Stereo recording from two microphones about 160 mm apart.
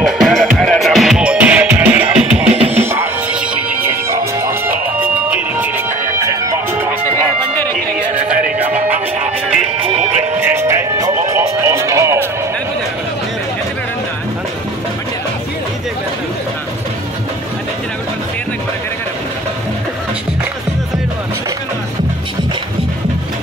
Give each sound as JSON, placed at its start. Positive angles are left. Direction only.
{"t": 0.0, "sound": "music", "side_deg": 0}
{"t": 8.5, "sound": "music", "side_deg": -10}
{"t": 10.1, "sound": "music", "side_deg": -15}